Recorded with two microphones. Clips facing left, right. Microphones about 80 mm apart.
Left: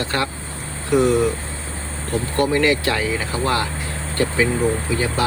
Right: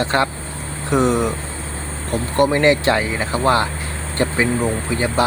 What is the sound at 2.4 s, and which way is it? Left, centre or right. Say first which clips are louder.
Speech: right 3 dB; right.